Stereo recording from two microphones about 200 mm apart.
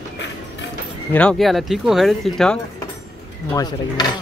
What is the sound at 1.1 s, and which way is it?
Speech, 5° left (ahead or behind).